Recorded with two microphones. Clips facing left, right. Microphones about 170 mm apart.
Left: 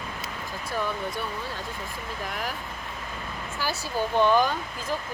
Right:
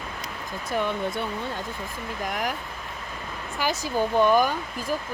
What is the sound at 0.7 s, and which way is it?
Speech, 20° right (ahead or behind).